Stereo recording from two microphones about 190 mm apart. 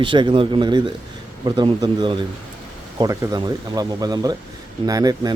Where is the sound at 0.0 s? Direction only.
25° right (ahead or behind).